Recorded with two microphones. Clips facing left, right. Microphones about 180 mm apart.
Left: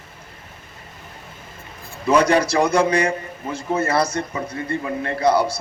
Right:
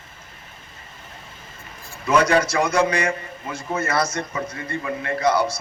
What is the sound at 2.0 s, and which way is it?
A man's voice, 30° left (ahead or behind).